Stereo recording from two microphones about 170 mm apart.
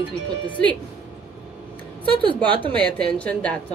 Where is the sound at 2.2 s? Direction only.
30° right (ahead or behind).